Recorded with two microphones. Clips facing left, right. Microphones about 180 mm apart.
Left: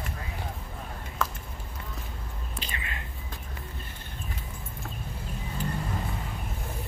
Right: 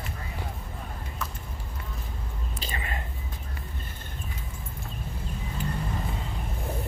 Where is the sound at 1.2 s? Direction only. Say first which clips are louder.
Left 6 dB; 90° left.